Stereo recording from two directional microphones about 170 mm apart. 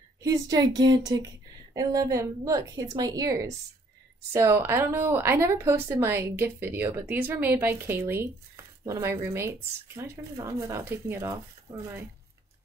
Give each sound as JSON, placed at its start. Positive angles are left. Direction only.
{"t": 0.2, "sound": "a woman's voice", "side_deg": -20}